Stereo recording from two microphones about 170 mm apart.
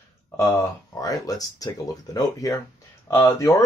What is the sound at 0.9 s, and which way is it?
Speech, 20° left (ahead or behind).